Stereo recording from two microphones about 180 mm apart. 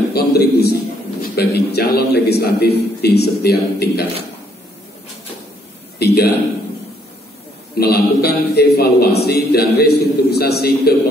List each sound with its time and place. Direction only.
0.1 s a sound: 60° left (ahead or behind)
1.3 s a man's voice: 65° left (ahead or behind)
5.9 s speech: 60° left (ahead or behind)
7.8 s a man's voice: 60° left (ahead or behind)